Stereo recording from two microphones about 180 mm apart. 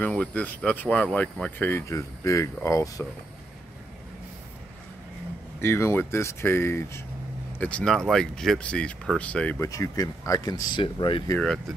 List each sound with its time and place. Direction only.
0.0 s speech: 5° left (ahead or behind)
5.6 s speech: 15° left (ahead or behind)
9.6 s speech: 20° left (ahead or behind)
11.3 s speech: centre (ahead or behind)